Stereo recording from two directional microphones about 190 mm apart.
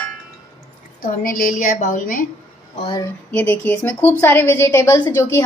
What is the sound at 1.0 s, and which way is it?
A woman's voice, 45° left (ahead or behind).